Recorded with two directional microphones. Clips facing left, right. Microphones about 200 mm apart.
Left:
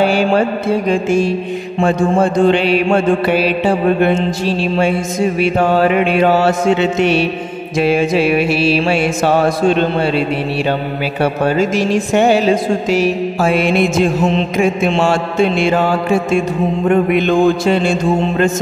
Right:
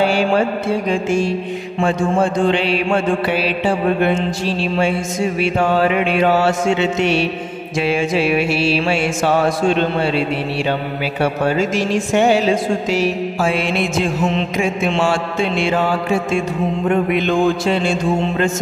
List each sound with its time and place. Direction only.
0.0 s speech: 45° left (ahead or behind)
4.7 s mantra: 40° left (ahead or behind)
7.0 s speech: 45° left (ahead or behind)
7.8 s mantra: 40° left (ahead or behind)
11.4 s speech: 40° left (ahead or behind)
14.2 s mantra: 35° left (ahead or behind)
15.0 s speech: 45° left (ahead or behind)